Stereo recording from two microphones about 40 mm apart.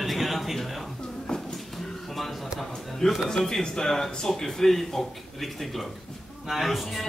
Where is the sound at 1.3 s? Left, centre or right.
Left.